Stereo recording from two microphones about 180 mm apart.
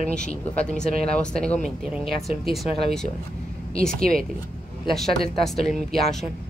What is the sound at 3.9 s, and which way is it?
Speech, 50° right (ahead or behind).